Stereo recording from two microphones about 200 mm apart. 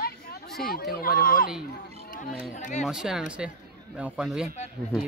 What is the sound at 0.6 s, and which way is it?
Speech, 50° left (ahead or behind).